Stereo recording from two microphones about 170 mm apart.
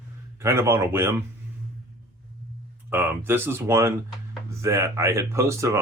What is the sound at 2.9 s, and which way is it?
Speech, 10° right (ahead or behind).